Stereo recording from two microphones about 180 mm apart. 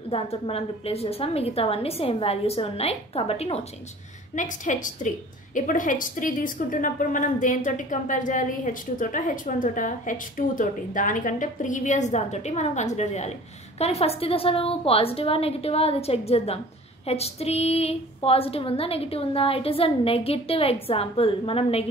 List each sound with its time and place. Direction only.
0.1 s a woman's voice: 35° left (ahead or behind)
4.4 s a woman's voice: 45° left (ahead or behind)